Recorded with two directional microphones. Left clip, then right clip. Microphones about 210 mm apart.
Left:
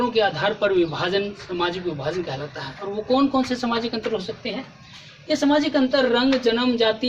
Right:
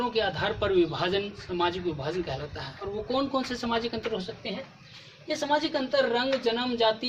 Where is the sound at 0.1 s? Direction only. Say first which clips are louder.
Left 7 dB; 15° right (ahead or behind).